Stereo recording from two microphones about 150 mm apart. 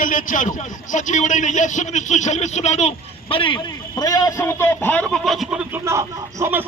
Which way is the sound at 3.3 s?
35° left (ahead or behind).